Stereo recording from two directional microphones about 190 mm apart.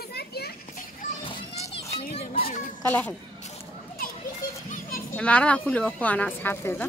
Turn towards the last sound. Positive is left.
turn(degrees=10)  # may be behind; listen again after turning